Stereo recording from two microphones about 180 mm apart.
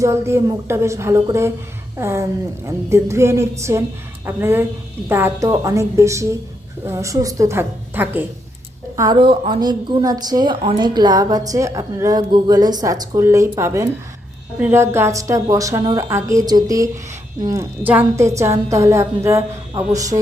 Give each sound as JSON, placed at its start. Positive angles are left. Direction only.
{"t": 0.0, "sound": "a woman's voice", "side_deg": -15}
{"t": 9.0, "sound": "a woman's voice", "side_deg": -25}